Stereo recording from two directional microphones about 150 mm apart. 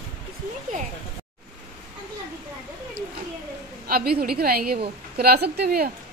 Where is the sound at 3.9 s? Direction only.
90° right.